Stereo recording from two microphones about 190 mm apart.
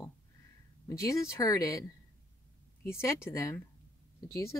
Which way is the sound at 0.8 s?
15° left (ahead or behind).